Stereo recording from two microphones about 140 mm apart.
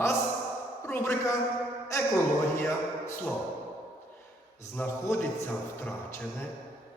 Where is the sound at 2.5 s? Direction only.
15° left (ahead or behind).